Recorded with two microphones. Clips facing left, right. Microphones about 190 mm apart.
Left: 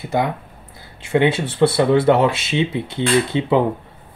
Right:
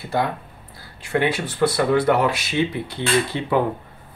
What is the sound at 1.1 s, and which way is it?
Speech, 25° left (ahead or behind).